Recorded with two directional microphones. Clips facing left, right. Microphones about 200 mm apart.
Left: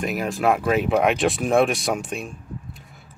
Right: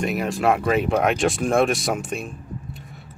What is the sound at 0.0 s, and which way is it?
Speech, centre (ahead or behind).